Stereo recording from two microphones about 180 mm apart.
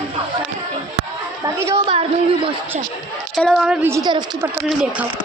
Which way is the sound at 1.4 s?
15° right (ahead or behind).